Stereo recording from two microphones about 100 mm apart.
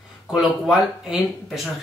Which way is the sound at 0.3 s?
5° right (ahead or behind).